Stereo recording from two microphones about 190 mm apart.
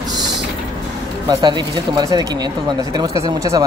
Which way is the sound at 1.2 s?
25° right (ahead or behind).